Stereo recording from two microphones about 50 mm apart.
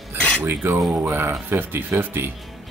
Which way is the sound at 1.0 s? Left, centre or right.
Right.